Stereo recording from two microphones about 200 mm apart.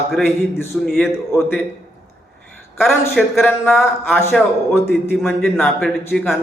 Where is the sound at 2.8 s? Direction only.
Centre (ahead or behind).